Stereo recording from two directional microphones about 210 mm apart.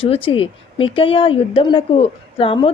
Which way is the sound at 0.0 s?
25° left (ahead or behind).